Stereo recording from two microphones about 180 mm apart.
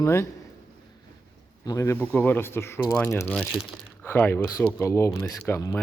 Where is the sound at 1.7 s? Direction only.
20° left (ahead or behind).